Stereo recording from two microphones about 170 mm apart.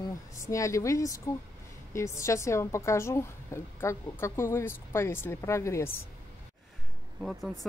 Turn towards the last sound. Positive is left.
turn(degrees=0)  # may be behind; listen again after turning